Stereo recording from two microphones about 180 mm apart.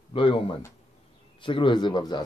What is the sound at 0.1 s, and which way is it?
A man's voice, 30° left (ahead or behind).